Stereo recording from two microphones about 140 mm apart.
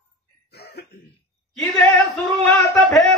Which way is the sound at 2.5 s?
20° left (ahead or behind).